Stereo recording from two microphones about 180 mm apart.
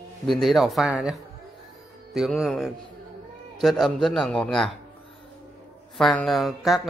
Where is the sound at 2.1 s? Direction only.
Centre (ahead or behind).